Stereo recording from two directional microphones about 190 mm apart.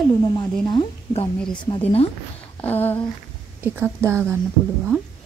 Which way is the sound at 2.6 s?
10° left (ahead or behind).